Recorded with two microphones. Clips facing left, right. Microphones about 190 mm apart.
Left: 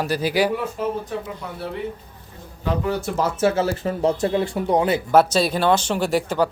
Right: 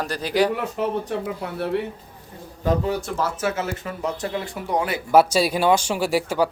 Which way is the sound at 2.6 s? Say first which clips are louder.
Right 3 dB; 45° right (ahead or behind).